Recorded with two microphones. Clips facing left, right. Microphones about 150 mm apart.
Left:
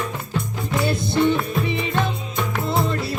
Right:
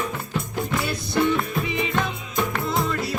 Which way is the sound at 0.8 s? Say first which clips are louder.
Left 5 dB; 30° left (ahead or behind).